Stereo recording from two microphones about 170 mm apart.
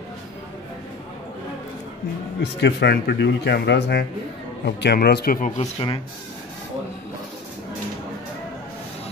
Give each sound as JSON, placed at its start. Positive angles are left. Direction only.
{"t": 2.4, "sound": "speech", "side_deg": 80}
{"t": 5.6, "sound": "speech", "side_deg": 35}